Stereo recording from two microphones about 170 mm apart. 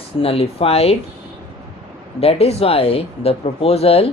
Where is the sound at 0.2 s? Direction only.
35° left (ahead or behind).